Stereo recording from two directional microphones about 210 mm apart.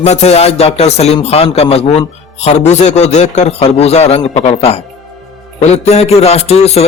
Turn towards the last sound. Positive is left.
turn(degrees=30)  # may be behind; listen again after turning